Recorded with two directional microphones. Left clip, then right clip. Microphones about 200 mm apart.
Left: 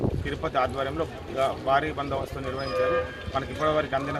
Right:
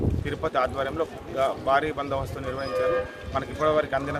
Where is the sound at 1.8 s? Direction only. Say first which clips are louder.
Right 1 dB; centre (ahead or behind).